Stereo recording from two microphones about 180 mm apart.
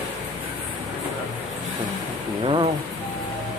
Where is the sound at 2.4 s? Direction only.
30° right (ahead or behind).